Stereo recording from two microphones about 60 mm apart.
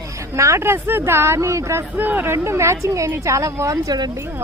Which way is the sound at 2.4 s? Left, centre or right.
Right.